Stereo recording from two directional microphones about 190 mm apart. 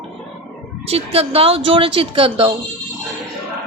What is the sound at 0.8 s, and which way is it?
A woman's voice, 30° right (ahead or behind).